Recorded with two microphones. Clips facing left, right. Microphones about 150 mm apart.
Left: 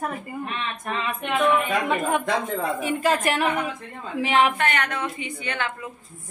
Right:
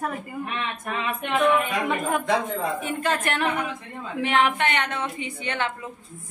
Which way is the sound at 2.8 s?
5° left (ahead or behind).